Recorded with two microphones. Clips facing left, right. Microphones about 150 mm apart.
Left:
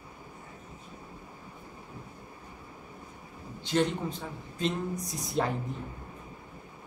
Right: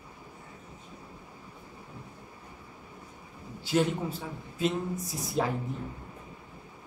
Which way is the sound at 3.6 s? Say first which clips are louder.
Right 1 dB; 5° right (ahead or behind).